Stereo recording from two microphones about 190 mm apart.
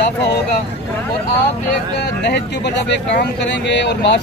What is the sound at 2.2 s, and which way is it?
Speech, 65° left (ahead or behind).